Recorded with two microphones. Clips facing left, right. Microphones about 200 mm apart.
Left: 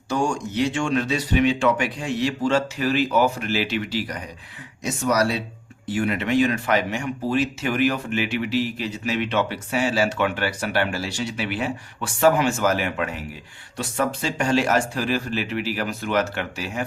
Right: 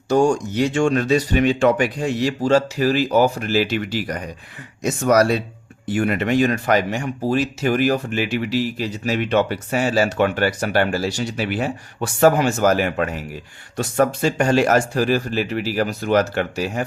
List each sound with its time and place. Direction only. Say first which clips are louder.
0.1 s speech: right 7 dB; 40° right (ahead or behind)